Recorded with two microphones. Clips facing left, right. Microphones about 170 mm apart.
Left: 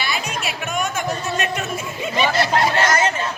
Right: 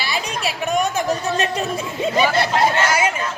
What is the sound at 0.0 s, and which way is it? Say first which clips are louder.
Chatter: right 1 dB; 35° right (ahead or behind).